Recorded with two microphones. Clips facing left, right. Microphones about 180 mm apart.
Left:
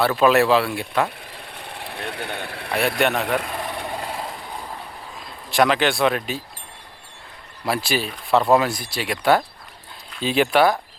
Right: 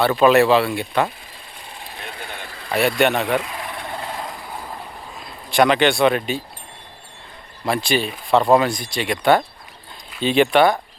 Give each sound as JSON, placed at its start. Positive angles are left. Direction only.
{"t": 0.0, "sound": "speech", "side_deg": 0}
{"t": 1.5, "sound": "vehicle", "side_deg": 65}
{"t": 3.0, "sound": "speech", "side_deg": 0}
{"t": 5.5, "sound": "speech", "side_deg": 0}
{"t": 7.6, "sound": "speech", "side_deg": 5}